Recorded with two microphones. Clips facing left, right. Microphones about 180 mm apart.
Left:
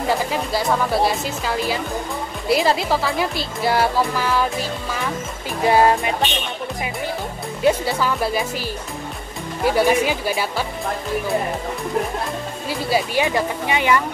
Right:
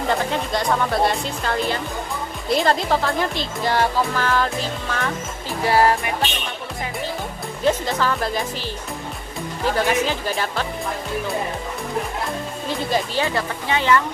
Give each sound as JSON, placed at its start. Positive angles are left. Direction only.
{"t": 0.1, "sound": "speech", "side_deg": 5}
{"t": 5.6, "sound": "music", "side_deg": 20}
{"t": 7.6, "sound": "speech", "side_deg": 10}
{"t": 9.7, "sound": "speech", "side_deg": 10}
{"t": 12.6, "sound": "speech", "side_deg": 10}